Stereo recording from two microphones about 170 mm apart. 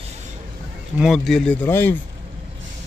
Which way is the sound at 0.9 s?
Centre (ahead or behind).